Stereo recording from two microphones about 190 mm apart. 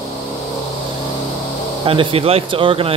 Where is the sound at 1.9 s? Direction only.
30° right (ahead or behind).